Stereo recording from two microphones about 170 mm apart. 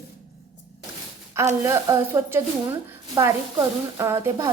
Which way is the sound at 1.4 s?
15° right (ahead or behind).